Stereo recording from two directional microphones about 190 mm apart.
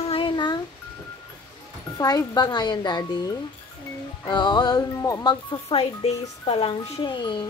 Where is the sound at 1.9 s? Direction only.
20° left (ahead or behind).